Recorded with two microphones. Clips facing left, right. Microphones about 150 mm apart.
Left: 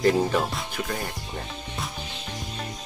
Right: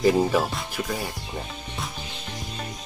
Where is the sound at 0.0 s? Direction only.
5° right (ahead or behind).